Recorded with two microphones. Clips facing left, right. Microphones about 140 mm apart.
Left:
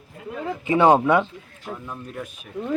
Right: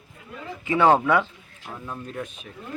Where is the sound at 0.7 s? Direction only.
20° left (ahead or behind).